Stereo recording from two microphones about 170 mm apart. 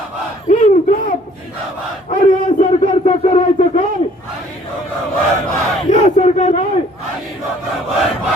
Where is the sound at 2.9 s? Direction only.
30° left (ahead or behind).